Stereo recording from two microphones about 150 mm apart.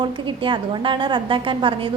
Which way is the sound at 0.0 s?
30° right (ahead or behind).